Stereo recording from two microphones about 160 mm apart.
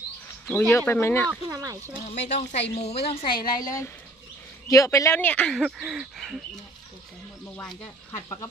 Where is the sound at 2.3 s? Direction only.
45° left (ahead or behind).